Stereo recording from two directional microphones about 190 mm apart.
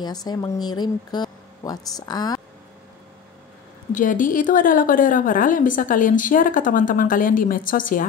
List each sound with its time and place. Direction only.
0.0 s speech: 20° left (ahead or behind)
3.9 s a woman's voice: 45° left (ahead or behind)